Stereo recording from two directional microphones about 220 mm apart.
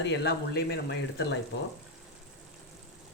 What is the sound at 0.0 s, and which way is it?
Speech, 50° left (ahead or behind).